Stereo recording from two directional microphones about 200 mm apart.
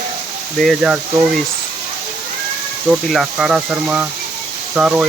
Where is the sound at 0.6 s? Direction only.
Centre (ahead or behind).